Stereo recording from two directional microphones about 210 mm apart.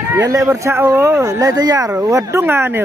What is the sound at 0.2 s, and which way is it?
Speech, 15° right (ahead or behind).